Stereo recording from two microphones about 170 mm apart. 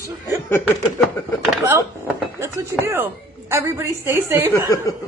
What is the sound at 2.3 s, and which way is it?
A woman's voice, 15° right (ahead or behind).